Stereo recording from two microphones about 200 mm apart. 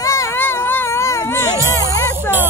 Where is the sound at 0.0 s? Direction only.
15° left (ahead or behind).